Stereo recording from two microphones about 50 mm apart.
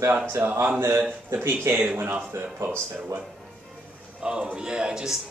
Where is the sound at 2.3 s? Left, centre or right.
Right.